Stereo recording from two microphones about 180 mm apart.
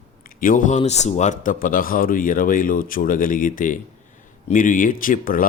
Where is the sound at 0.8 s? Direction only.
35° left (ahead or behind).